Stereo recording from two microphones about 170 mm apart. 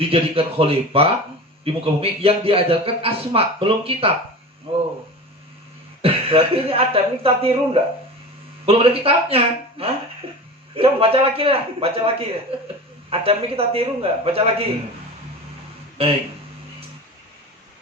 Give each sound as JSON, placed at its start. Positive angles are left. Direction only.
{"t": 0.1, "sound": "a man's voice", "side_deg": -35}
{"t": 6.0, "sound": "a man's voice", "side_deg": -35}